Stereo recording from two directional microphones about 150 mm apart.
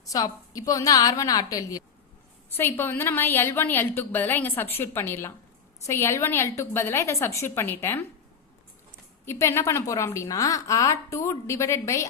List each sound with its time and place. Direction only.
0.0 s a woman's voice: 25° left (ahead or behind)
9.2 s a woman's voice: 15° left (ahead or behind)